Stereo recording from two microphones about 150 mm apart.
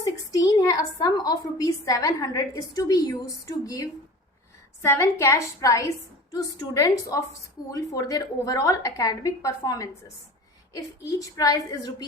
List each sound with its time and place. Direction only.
0.0 s a woman's voice: 25° left (ahead or behind)